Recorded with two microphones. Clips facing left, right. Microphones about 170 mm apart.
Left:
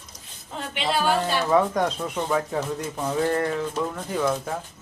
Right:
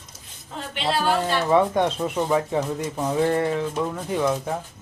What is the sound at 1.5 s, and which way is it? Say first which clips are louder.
Speech: right 2 dB; 25° right (ahead or behind).